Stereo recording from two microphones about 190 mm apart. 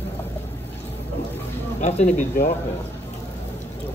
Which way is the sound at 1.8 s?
35° left (ahead or behind).